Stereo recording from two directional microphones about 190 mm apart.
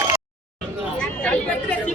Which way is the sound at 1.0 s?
5° left (ahead or behind).